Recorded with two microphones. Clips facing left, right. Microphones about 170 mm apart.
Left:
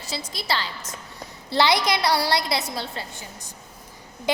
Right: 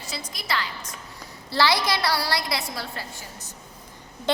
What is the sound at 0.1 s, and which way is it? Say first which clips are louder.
A woman's voice: left 3 dB; 30° left (ahead or behind).